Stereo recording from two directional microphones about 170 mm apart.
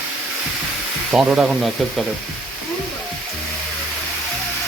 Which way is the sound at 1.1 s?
5° right (ahead or behind).